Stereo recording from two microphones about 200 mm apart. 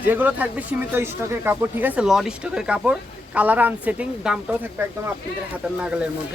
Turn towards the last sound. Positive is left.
turn(degrees=-5)  # may be behind; listen again after turning